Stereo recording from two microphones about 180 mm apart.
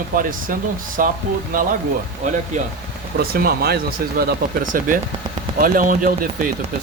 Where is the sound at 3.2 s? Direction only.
55° right (ahead or behind).